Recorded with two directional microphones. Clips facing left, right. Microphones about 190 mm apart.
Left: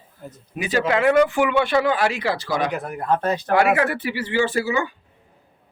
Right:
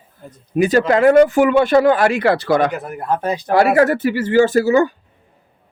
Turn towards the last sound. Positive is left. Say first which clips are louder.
# right 9 dB
turn(degrees=-45)  # may be behind; listen again after turning